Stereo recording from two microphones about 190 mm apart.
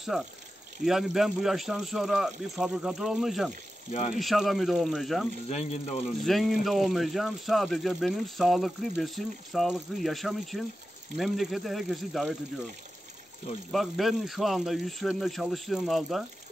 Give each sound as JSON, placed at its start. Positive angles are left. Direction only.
{"t": 0.1, "sound": "speech", "side_deg": -5}
{"t": 5.5, "sound": "speech", "side_deg": 35}
{"t": 6.2, "sound": "speech", "side_deg": 0}
{"t": 13.7, "sound": "speech", "side_deg": 0}